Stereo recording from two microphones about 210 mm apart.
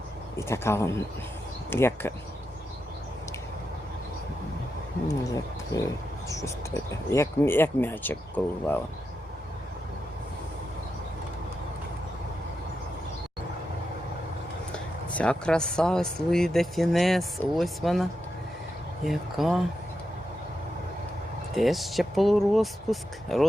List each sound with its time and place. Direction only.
0.3 s speech: 15° left (ahead or behind)
5.7 s speech: 15° left (ahead or behind)
14.7 s speech: 5° left (ahead or behind)
19.0 s speech: centre (ahead or behind)
21.5 s speech: centre (ahead or behind)